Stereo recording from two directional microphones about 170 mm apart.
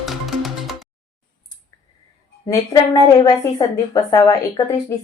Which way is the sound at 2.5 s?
20° left (ahead or behind).